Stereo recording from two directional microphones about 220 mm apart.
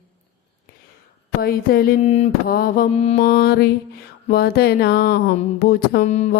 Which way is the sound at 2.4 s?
40° left (ahead or behind).